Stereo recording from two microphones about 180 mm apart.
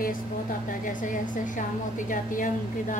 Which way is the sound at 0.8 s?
45° left (ahead or behind).